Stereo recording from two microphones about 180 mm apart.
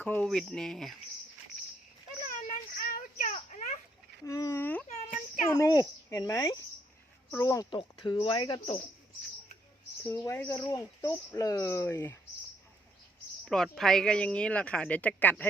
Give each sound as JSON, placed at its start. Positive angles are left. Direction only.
{"t": 0.0, "sound": "speech", "side_deg": 5}
{"t": 2.2, "sound": "a sound", "side_deg": 50}
{"t": 4.3, "sound": "a sound", "side_deg": 15}
{"t": 5.5, "sound": "speech", "side_deg": 20}
{"t": 10.0, "sound": "speech", "side_deg": 15}
{"t": 10.6, "sound": "speech", "side_deg": 20}
{"t": 13.4, "sound": "speech", "side_deg": 0}